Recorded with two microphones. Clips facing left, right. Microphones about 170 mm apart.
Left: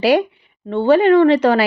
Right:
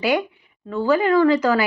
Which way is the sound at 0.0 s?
35° left (ahead or behind).